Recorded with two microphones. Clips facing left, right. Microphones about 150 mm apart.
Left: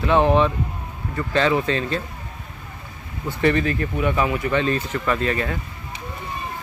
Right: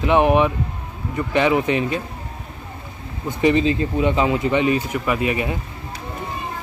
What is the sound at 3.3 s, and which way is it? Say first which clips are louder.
Speech: right 3 dB; 15° right (ahead or behind).